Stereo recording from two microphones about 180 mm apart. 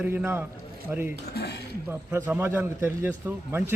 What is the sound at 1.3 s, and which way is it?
Speech, 65° left (ahead or behind).